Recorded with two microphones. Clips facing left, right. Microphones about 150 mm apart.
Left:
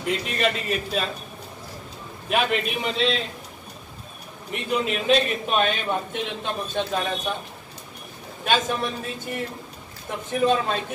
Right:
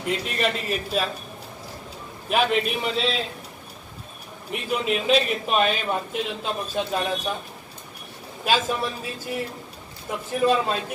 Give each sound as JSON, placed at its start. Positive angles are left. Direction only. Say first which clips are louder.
{"t": 0.4, "sound": "a man's voice", "louder": "left 1 dB", "side_deg": -5}
{"t": 2.2, "sound": "a man's voice", "louder": "right 1 dB", "side_deg": 0}
{"t": 4.5, "sound": "a man's voice", "louder": "even", "side_deg": 0}
{"t": 8.5, "sound": "a man's voice", "louder": "even", "side_deg": -5}